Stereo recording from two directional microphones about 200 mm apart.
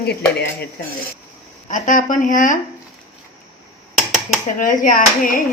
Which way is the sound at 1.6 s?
40° left (ahead or behind).